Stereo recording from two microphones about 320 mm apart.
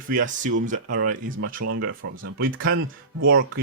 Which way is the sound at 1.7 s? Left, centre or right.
Right.